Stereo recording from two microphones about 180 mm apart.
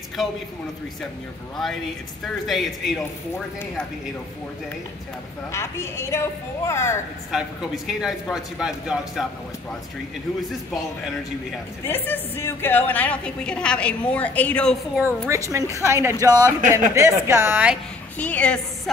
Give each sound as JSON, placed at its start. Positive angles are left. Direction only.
{"t": 2.2, "sound": "a woman's voice", "side_deg": 0}
{"t": 5.5, "sound": "a woman's voice", "side_deg": 15}
{"t": 7.2, "sound": "a woman's voice", "side_deg": 0}
{"t": 11.8, "sound": "a woman's voice", "side_deg": 10}
{"t": 15.0, "sound": "a woman's voice", "side_deg": -15}
{"t": 18.1, "sound": "a woman's voice", "side_deg": 10}